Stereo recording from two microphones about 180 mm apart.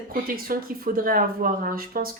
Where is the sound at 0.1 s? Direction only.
55° right (ahead or behind).